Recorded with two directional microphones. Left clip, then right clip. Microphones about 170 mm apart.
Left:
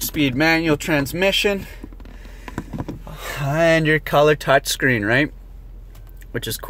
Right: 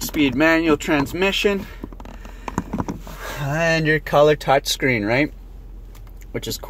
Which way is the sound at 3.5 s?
35° left (ahead or behind).